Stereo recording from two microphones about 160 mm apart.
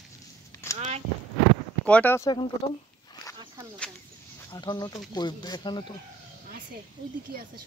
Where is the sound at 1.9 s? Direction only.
10° left (ahead or behind).